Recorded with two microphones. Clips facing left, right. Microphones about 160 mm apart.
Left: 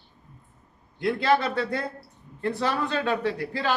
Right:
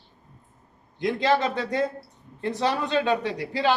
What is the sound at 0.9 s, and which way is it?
A man's voice, 20° right (ahead or behind).